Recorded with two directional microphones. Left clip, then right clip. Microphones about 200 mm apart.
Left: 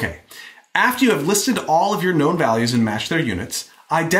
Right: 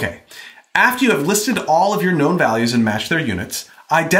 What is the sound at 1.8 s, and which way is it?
Speech, 35° right (ahead or behind).